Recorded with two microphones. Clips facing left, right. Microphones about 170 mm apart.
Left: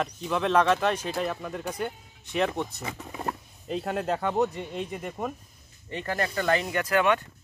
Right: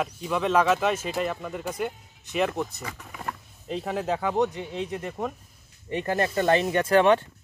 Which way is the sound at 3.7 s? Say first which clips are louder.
Even; centre (ahead or behind).